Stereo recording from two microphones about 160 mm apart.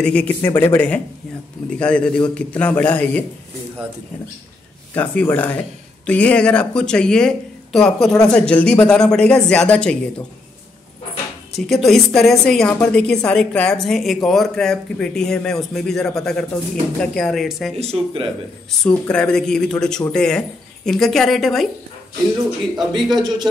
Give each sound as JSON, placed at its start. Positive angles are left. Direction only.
{"t": 0.0, "sound": "speech", "side_deg": 10}
{"t": 4.9, "sound": "speech", "side_deg": 10}
{"t": 11.5, "sound": "a woman's voice", "side_deg": 0}
{"t": 17.7, "sound": "speech", "side_deg": -40}
{"t": 18.7, "sound": "a woman's voice", "side_deg": 5}
{"t": 22.8, "sound": "a woman's voice", "side_deg": 0}